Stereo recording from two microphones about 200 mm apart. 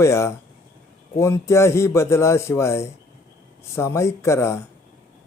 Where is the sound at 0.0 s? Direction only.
15° left (ahead or behind).